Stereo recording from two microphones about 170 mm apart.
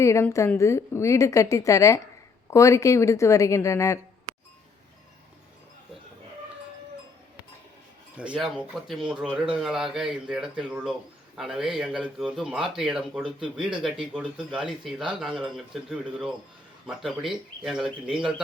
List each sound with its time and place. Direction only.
0.0 s a woman's voice: 15° left (ahead or behind)
8.1 s speech: 5° right (ahead or behind)